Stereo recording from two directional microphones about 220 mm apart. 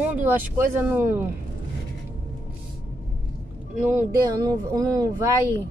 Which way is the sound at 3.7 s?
10° right (ahead or behind).